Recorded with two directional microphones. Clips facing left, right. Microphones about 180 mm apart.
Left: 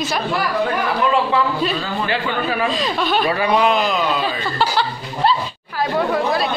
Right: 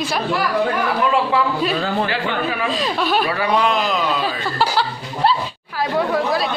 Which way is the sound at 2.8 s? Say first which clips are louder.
Even; 5° right (ahead or behind).